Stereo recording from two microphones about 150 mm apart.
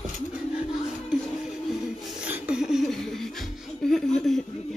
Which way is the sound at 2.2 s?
10° right (ahead or behind).